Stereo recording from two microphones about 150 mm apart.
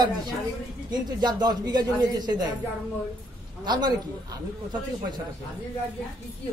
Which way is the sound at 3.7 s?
30° right (ahead or behind).